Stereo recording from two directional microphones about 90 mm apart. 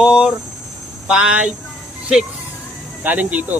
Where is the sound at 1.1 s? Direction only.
10° right (ahead or behind).